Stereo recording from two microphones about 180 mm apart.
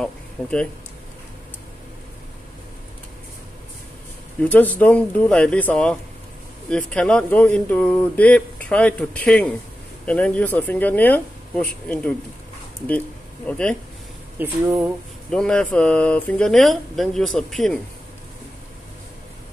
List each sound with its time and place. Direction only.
0.0 s a sound: 5° left (ahead or behind)
4.4 s speech: 10° left (ahead or behind)
13.5 s speech: 5° left (ahead or behind)
14.4 s speech: 10° right (ahead or behind)
15.3 s speech: 5° left (ahead or behind)